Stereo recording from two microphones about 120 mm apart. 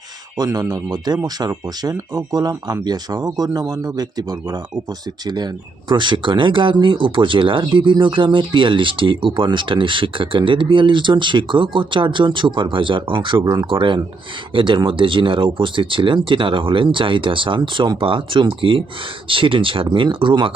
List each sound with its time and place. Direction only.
0.3 s speech: 30° right (ahead or behind)